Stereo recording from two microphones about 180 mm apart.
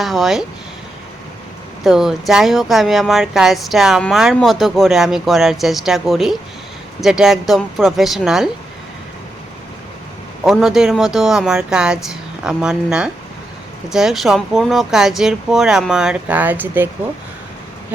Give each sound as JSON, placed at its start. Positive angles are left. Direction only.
{"t": 0.0, "sound": "speech", "side_deg": 0}
{"t": 1.8, "sound": "speech", "side_deg": 0}
{"t": 10.4, "sound": "speech", "side_deg": 0}